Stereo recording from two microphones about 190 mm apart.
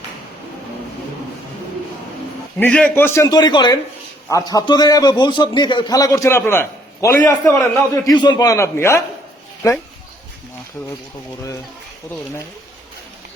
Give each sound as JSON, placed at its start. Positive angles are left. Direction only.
{"t": 2.6, "sound": "a man's voice", "side_deg": 5}